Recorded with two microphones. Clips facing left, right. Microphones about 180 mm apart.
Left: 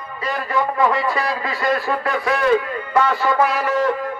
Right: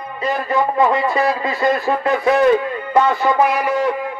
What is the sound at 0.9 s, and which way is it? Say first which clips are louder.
Speech: right 4 dB; 20° right (ahead or behind).